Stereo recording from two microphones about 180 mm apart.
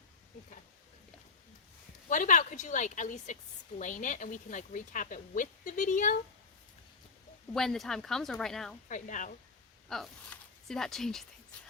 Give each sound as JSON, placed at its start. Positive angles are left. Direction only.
{"t": 2.0, "sound": "speech", "side_deg": 45}
{"t": 7.5, "sound": "speech", "side_deg": 0}
{"t": 8.9, "sound": "speech", "side_deg": 45}
{"t": 9.9, "sound": "speech", "side_deg": 0}